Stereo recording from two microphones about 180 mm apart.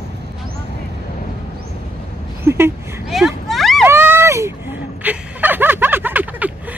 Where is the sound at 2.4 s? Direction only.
15° right (ahead or behind).